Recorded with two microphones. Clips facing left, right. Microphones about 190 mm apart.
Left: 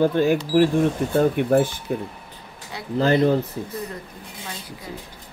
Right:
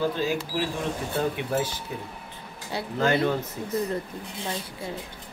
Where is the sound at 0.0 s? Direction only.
55° left (ahead or behind).